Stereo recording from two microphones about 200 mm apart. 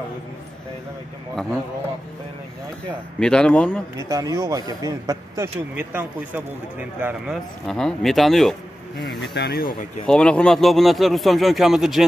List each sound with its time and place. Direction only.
3.2 s speech: 5° left (ahead or behind)
4.1 s speech: 15° right (ahead or behind)
7.6 s speech: centre (ahead or behind)
9.2 s speech: 55° left (ahead or behind)
10.0 s speech: 5° left (ahead or behind)